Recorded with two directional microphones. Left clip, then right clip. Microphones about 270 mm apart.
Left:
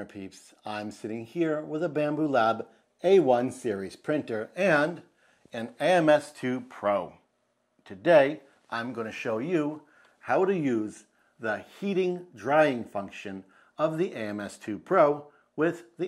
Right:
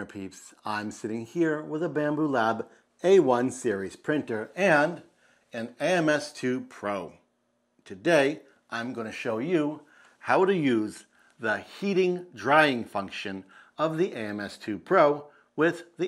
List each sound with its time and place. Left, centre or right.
0.5 s speech: centre